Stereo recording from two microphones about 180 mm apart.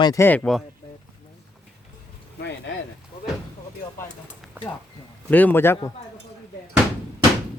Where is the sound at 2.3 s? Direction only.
80° left.